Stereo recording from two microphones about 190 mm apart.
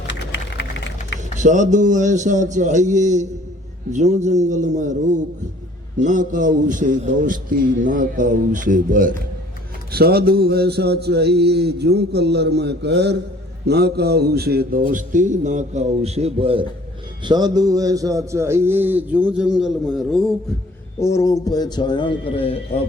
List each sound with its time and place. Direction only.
0.1 s a sound: 70° left (ahead or behind)
1.4 s a man's voice: 40° right (ahead or behind)
6.0 s a man's voice: 40° right (ahead or behind); by 20.3 s centre (ahead or behind)
21.0 s a man's voice: 15° left (ahead or behind)